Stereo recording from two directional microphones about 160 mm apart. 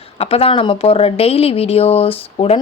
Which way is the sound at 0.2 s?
40° left (ahead or behind).